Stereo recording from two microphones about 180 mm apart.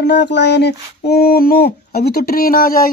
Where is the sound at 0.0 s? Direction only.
70° left (ahead or behind).